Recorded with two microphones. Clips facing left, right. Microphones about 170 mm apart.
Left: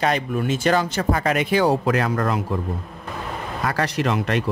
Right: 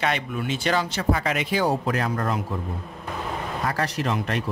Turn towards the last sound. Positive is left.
turn(degrees=80)